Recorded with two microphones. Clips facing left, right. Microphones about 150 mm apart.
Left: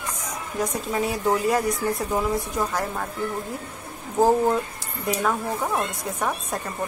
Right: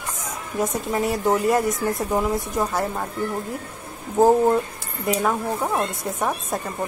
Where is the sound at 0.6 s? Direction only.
Centre (ahead or behind).